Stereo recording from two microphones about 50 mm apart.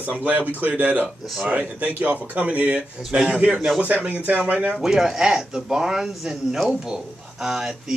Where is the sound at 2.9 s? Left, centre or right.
Centre.